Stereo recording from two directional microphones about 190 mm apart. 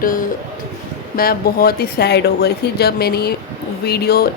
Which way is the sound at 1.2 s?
50° left (ahead or behind).